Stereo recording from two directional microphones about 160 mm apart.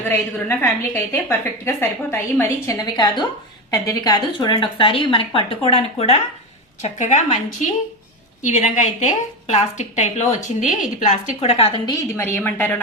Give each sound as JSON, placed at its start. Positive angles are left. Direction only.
{"t": 0.3, "sound": "a woman's voice", "side_deg": 15}
{"t": 11.9, "sound": "a woman's voice", "side_deg": 15}